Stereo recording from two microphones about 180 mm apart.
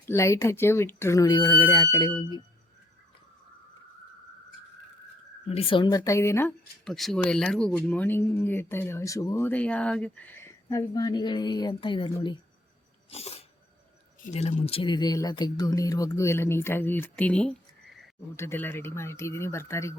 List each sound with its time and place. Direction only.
0.0 s speech: 15° left (ahead or behind)
5.5 s speech: 30° left (ahead or behind); by 6.5 s 15° left (ahead or behind)
6.8 s speech: centre (ahead or behind); by 12.1 s 25° left (ahead or behind)
13.1 s dog: 35° left (ahead or behind)
14.3 s speech: 35° left (ahead or behind); by 20.0 s 15° left (ahead or behind)